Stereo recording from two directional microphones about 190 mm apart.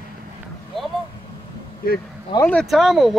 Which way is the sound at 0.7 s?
Centre (ahead or behind).